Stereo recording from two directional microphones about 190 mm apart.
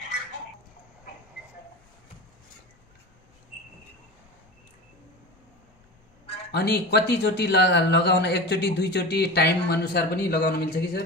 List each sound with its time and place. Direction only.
6.5 s a man's voice: 60° left (ahead or behind)